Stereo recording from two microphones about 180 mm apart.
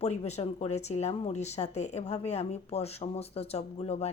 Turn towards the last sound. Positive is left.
turn(degrees=35)  # may be behind; listen again after turning